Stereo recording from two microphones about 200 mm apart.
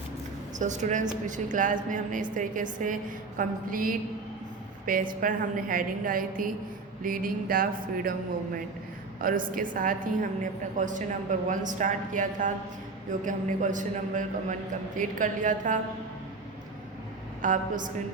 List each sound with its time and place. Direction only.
0.6 s a woman's voice: 35° right (ahead or behind)
9.2 s a woman's voice: 45° right (ahead or behind)
17.4 s a woman's voice: 40° right (ahead or behind)